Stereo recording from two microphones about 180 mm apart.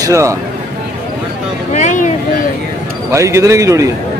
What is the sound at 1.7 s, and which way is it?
Speech, 45° left (ahead or behind).